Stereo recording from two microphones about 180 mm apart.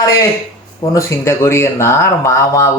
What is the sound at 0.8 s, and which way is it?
Speech, 15° left (ahead or behind).